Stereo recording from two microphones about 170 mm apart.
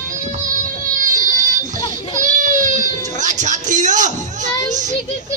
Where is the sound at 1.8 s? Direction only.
20° left (ahead or behind).